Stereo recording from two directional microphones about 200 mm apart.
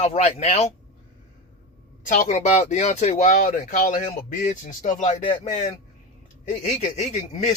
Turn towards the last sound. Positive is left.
turn(degrees=35)  # may be behind; listen again after turning